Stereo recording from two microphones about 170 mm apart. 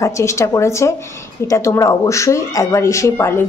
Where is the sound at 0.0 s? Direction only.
15° left (ahead or behind).